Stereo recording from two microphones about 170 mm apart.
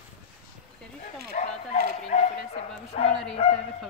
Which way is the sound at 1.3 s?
50° left (ahead or behind).